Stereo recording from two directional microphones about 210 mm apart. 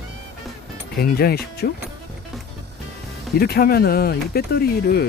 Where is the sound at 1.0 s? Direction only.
50° left (ahead or behind).